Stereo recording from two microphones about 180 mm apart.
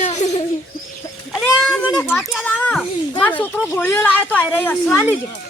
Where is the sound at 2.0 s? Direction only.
5° left (ahead or behind).